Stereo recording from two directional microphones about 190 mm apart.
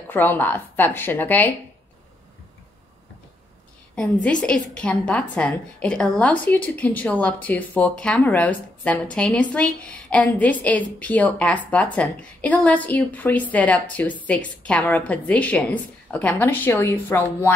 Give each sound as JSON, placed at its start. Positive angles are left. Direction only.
{"t": 0.1, "sound": "a woman's voice", "side_deg": 10}
{"t": 3.9, "sound": "a woman's voice", "side_deg": 5}